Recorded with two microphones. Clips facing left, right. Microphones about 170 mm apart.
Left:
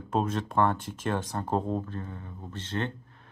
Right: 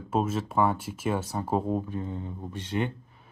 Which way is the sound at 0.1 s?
5° right (ahead or behind).